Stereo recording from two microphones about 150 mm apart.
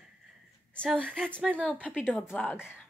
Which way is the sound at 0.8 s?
5° left (ahead or behind).